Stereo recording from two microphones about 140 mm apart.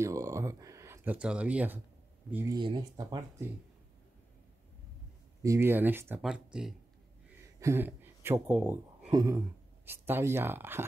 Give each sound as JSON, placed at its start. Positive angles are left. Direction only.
{"t": 0.0, "sound": "a sound", "side_deg": -20}
{"t": 2.5, "sound": "speech", "side_deg": -30}
{"t": 5.4, "sound": "speech", "side_deg": -20}
{"t": 7.6, "sound": "speech", "side_deg": -15}
{"t": 9.1, "sound": "speech", "side_deg": -25}
{"t": 9.8, "sound": "speech", "side_deg": -15}